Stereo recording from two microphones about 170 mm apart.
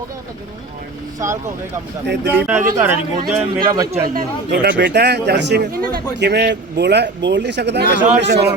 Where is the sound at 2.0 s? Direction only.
90° right.